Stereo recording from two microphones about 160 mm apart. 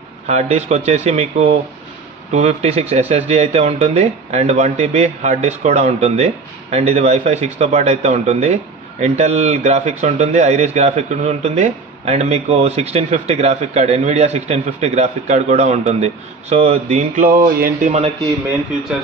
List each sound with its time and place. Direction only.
0.3 s a man's voice: 45° right (ahead or behind); by 17.7 s 65° right (ahead or behind)
17.8 s a man's voice: 40° right (ahead or behind)